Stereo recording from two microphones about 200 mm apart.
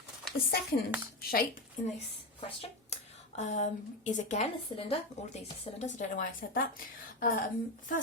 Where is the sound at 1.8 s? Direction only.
40° left (ahead or behind).